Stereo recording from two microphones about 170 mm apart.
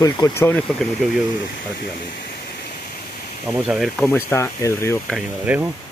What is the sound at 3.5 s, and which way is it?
Speech, 5° right (ahead or behind).